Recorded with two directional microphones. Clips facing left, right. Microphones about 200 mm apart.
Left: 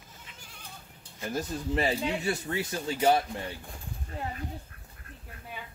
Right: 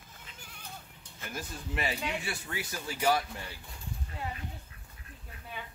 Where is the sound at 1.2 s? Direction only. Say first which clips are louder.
Left 8 dB; 30° left (ahead or behind).